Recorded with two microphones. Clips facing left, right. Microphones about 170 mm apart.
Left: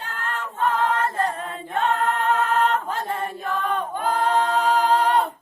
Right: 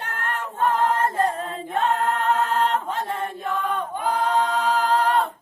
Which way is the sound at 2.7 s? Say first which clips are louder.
Even; 25° right (ahead or behind).